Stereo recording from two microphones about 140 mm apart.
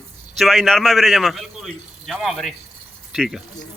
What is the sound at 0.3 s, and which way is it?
Speech, centre (ahead or behind).